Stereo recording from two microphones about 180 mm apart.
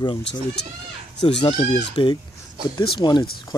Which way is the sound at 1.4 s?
25° left (ahead or behind).